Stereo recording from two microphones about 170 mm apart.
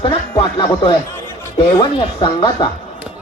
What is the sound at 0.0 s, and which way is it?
Speech, 30° left (ahead or behind).